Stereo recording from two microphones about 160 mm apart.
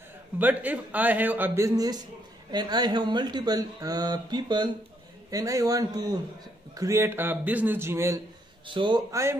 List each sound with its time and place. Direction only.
0.4 s a man's voice: 10° right (ahead or behind)
8.6 s speech: 30° right (ahead or behind)